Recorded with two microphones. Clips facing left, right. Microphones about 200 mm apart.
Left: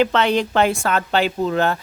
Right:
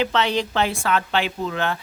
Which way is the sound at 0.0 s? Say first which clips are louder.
Left 4 dB; 55° left (ahead or behind).